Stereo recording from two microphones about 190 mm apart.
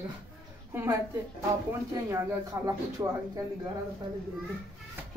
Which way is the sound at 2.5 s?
15° right (ahead or behind).